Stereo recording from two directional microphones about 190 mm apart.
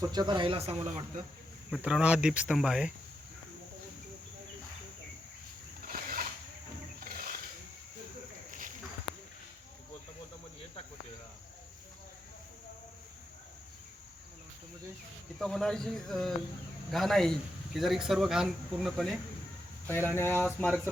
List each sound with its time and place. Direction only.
0.0 s speech: 20° right (ahead or behind)
1.7 s speech: 5° right (ahead or behind)
5.8 s a sound: 50° right (ahead or behind)
8.4 s a sound: 45° right (ahead or behind)
15.4 s speech: centre (ahead or behind)
19.9 s speech: 10° left (ahead or behind)